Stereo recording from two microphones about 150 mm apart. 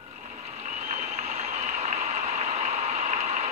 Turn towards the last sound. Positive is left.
turn(degrees=-50)  # may be behind; listen again after turning